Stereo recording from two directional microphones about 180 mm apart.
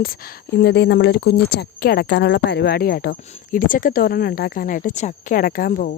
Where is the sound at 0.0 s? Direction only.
55° left (ahead or behind).